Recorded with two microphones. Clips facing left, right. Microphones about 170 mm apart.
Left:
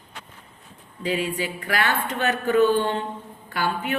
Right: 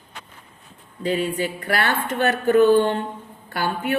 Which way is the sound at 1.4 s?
40° right (ahead or behind).